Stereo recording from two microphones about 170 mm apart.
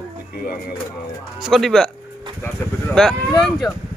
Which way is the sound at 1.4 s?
Centre (ahead or behind).